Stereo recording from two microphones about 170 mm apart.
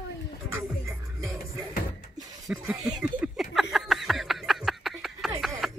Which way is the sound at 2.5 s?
5° right (ahead or behind).